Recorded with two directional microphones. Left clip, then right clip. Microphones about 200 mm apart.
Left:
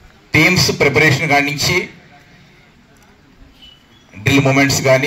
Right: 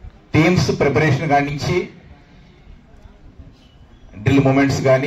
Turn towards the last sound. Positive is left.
turn(degrees=-30)  # may be behind; listen again after turning